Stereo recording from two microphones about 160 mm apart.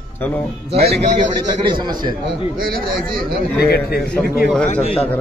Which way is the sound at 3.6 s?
80° left.